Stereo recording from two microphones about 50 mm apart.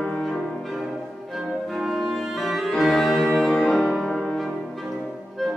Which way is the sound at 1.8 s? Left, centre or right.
Centre.